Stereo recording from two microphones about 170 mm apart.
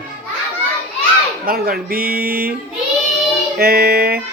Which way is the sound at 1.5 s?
60° right (ahead or behind).